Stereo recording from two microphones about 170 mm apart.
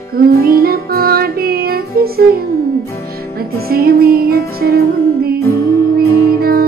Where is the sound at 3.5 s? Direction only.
65° right (ahead or behind).